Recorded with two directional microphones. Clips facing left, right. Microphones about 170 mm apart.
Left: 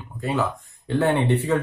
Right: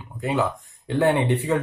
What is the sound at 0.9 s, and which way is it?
Speech, 15° right (ahead or behind).